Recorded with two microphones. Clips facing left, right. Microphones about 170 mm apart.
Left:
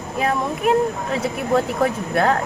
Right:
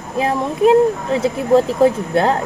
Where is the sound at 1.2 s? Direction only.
25° right (ahead or behind).